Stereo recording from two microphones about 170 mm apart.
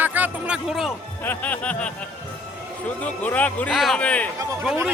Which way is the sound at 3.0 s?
10° left (ahead or behind).